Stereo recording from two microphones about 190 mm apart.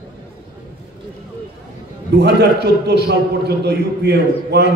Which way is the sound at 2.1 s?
60° right (ahead or behind).